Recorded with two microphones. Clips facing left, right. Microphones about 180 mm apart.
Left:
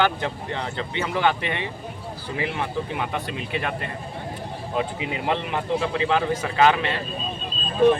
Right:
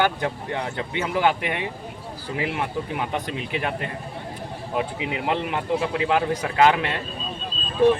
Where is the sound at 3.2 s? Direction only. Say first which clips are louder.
Right 1 dB; 20° right (ahead or behind).